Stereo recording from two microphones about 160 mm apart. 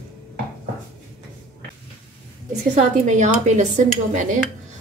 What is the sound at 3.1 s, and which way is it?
Speech, 50° right (ahead or behind).